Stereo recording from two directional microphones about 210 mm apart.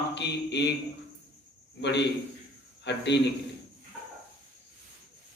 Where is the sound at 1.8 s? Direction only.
55° left (ahead or behind).